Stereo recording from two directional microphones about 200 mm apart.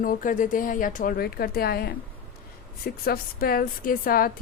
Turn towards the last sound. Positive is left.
turn(degrees=45)  # may be behind; listen again after turning